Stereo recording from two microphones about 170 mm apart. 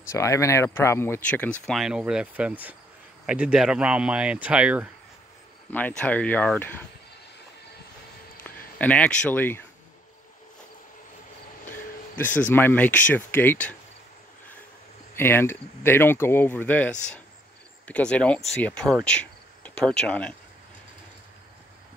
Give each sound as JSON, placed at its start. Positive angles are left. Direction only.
{"t": 0.1, "sound": "speech", "side_deg": 15}
{"t": 1.7, "sound": "speech", "side_deg": -5}
{"t": 5.7, "sound": "speech", "side_deg": 10}
{"t": 8.5, "sound": "speech", "side_deg": 10}
{"t": 12.4, "sound": "speech", "side_deg": 10}
{"t": 15.1, "sound": "speech", "side_deg": 15}
{"t": 17.8, "sound": "cricket", "side_deg": 5}